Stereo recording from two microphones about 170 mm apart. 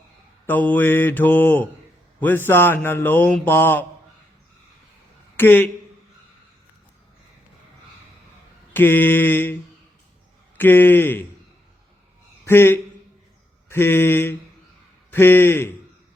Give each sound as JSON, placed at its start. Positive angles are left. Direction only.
{"t": 0.4, "sound": "speech", "side_deg": 10}
{"t": 5.4, "sound": "speech", "side_deg": 10}
{"t": 8.7, "sound": "speech", "side_deg": 10}
{"t": 10.6, "sound": "speech", "side_deg": 10}
{"t": 12.5, "sound": "speech", "side_deg": 10}